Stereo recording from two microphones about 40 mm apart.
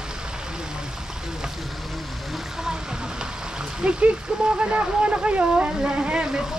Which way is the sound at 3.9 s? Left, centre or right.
Right.